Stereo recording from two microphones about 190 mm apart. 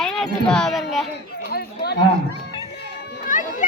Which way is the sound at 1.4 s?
55° left (ahead or behind).